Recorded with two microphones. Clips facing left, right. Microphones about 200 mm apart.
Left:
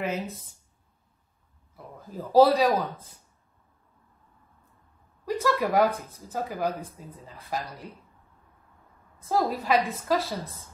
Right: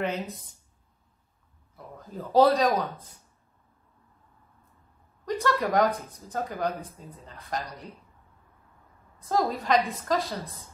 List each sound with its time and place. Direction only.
0.0 s a woman's voice: centre (ahead or behind)
2.0 s a man's voice: centre (ahead or behind)
5.2 s a woman's voice: 5° left (ahead or behind)
9.3 s a woman's voice: 5° left (ahead or behind)